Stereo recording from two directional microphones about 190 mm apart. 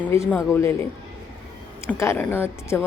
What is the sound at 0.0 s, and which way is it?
Speech, 10° left (ahead or behind).